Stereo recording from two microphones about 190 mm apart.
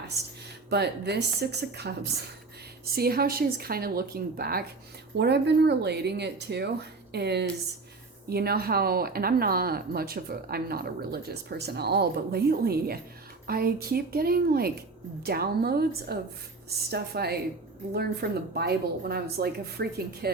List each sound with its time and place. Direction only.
0.7 s speech: 60° right (ahead or behind)
2.9 s speech: 55° right (ahead or behind)
5.1 s speech: 65° right (ahead or behind)